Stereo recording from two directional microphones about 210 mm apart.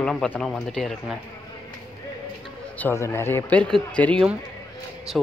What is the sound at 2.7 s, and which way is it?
Speech, 10° left (ahead or behind).